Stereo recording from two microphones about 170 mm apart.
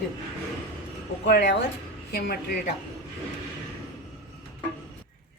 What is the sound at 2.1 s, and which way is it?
Speech, 70° left (ahead or behind).